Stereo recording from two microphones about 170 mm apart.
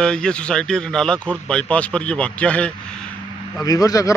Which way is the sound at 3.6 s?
20° left (ahead or behind).